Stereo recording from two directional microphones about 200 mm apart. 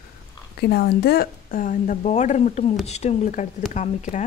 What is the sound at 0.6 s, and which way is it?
A woman's voice, 50° left (ahead or behind).